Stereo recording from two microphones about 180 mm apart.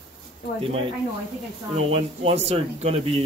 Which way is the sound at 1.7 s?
35° right (ahead or behind).